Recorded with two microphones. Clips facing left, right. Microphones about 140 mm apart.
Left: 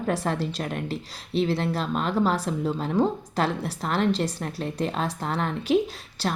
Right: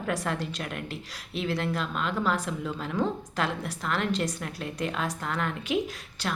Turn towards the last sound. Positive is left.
turn(degrees=35)  # may be behind; listen again after turning